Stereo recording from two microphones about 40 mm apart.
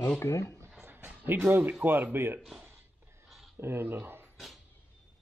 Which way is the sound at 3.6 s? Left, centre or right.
Right.